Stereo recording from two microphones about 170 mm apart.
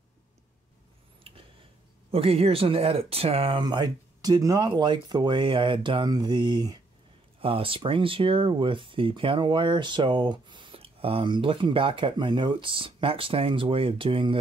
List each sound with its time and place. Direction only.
2.0 s speech: 35° right (ahead or behind)